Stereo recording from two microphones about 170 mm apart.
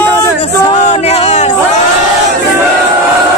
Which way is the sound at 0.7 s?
40° left (ahead or behind).